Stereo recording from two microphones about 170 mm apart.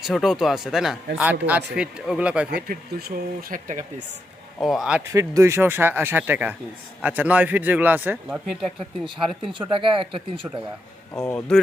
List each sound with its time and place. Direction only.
0.0 s speech: centre (ahead or behind)
2.6 s speech: 60° right (ahead or behind)
4.6 s speech: centre (ahead or behind)
5.1 s speech: 15° right (ahead or behind)
9.5 s speech: 30° right (ahead or behind)
11.1 s speech: 15° left (ahead or behind)